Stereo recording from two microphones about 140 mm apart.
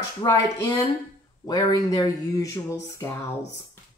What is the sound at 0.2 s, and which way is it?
A woman's voice, 25° left (ahead or behind).